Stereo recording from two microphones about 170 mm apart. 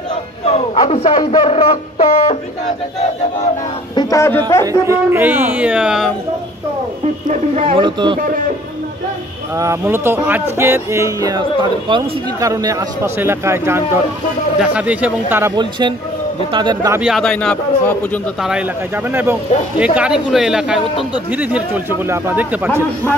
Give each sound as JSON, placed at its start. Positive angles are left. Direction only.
{"t": 0.5, "sound": "speech", "side_deg": 35}
{"t": 3.9, "sound": "speech", "side_deg": 20}
{"t": 4.8, "sound": "speech", "side_deg": -15}
{"t": 7.2, "sound": "speech", "side_deg": -40}
{"t": 9.6, "sound": "speech", "side_deg": -15}
{"t": 15.5, "sound": "speech", "side_deg": -25}
{"t": 16.9, "sound": "a man's voice", "side_deg": -5}
{"t": 18.4, "sound": "a man's voice", "side_deg": -5}